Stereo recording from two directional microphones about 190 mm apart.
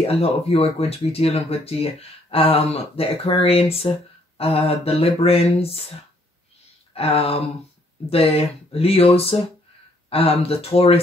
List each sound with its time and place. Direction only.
0.0 s speech: 30° left (ahead or behind)
6.9 s a sound: 30° left (ahead or behind)
8.1 s speech: 30° left (ahead or behind)